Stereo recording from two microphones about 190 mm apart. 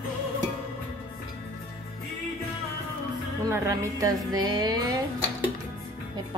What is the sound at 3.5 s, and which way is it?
Music, 15° right (ahead or behind).